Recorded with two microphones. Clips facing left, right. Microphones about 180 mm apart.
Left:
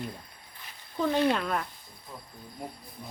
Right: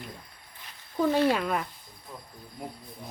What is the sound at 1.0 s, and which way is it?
Speech, 10° right (ahead or behind).